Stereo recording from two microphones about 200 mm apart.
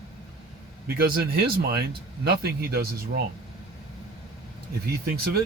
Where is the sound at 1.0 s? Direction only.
50° right (ahead or behind).